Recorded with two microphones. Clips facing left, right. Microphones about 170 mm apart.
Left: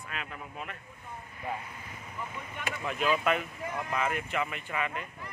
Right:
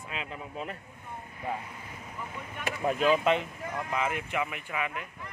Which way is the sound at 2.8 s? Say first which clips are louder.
Right 4 dB; 30° right (ahead or behind).